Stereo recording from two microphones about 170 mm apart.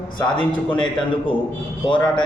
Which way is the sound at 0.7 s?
30° left (ahead or behind).